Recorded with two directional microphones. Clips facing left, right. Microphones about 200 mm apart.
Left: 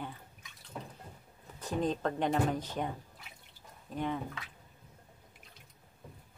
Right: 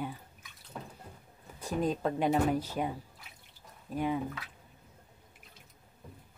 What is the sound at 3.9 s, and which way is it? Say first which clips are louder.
Speech: right 3 dB; 10° right (ahead or behind).